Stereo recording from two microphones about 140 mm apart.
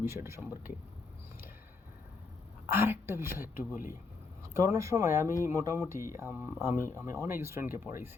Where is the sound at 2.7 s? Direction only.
15° right (ahead or behind).